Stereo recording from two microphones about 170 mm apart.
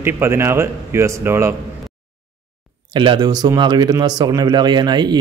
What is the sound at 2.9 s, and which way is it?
Speech, 25° right (ahead or behind).